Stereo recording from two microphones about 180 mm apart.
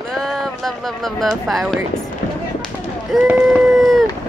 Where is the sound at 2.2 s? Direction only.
65° left (ahead or behind).